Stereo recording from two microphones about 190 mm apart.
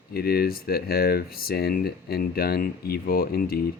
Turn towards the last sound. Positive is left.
turn(degrees=50)  # may be behind; listen again after turning